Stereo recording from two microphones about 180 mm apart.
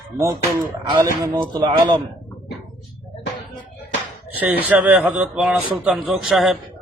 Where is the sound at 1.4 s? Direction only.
25° right (ahead or behind).